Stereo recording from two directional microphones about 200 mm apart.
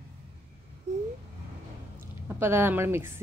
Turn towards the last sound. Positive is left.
turn(degrees=-10)  # may be behind; listen again after turning